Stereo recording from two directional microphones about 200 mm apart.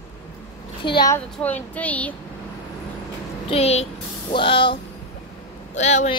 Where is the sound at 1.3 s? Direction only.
5° left (ahead or behind).